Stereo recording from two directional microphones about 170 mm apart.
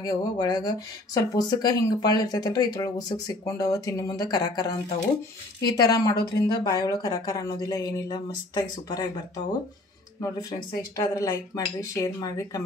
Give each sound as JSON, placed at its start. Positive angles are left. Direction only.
{"t": 0.0, "sound": "speech", "side_deg": 20}
{"t": 11.0, "sound": "speech", "side_deg": 20}